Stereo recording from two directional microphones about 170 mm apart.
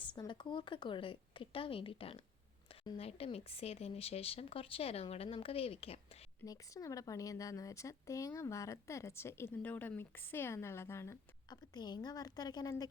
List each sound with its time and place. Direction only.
0.2 s a woman's voice: 25° left (ahead or behind)
6.4 s speech: 20° left (ahead or behind)